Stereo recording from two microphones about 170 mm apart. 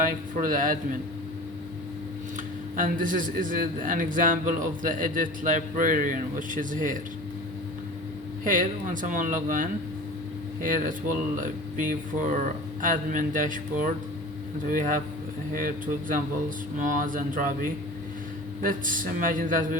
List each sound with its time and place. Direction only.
0.1 s a man's voice: 55° right (ahead or behind)
2.7 s a man's voice: 50° right (ahead or behind)
8.4 s a man's voice: 50° right (ahead or behind)